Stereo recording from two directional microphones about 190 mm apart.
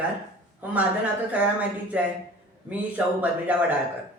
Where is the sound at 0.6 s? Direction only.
10° right (ahead or behind).